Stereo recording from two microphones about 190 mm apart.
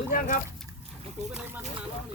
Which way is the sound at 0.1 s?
45° left (ahead or behind).